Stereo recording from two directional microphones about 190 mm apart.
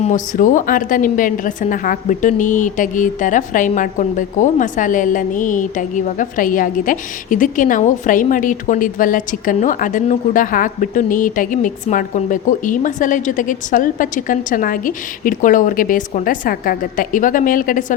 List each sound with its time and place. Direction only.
0.0 s a woman's voice: 40° left (ahead or behind)